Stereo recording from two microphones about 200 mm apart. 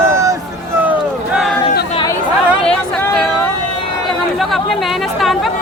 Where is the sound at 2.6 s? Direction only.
5° left (ahead or behind).